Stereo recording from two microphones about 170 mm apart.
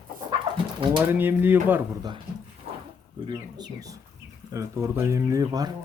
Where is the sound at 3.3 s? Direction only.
25° right (ahead or behind).